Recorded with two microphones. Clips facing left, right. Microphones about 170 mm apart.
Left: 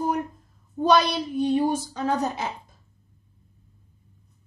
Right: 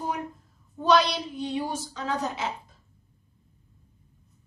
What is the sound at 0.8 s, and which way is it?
A woman's voice, 50° left (ahead or behind).